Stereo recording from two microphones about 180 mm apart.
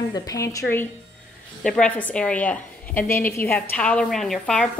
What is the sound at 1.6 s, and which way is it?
Speech, 5° left (ahead or behind).